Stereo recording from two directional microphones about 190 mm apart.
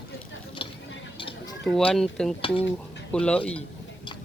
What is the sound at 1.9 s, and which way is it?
Speech, centre (ahead or behind).